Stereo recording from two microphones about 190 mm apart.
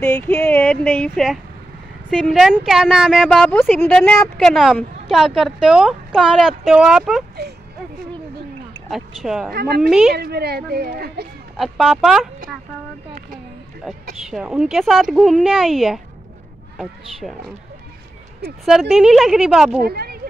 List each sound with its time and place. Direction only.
0.0 s speech: 10° left (ahead or behind)
8.9 s speech: centre (ahead or behind)
9.5 s a woman's voice: 55° right (ahead or behind)
9.8 s speech: 5° right (ahead or behind)
10.1 s a woman's voice: 55° right (ahead or behind)
11.5 s speech: centre (ahead or behind)
13.8 s speech: 5° right (ahead or behind)
18.7 s speech: centre (ahead or behind)
19.8 s speech: 55° right (ahead or behind)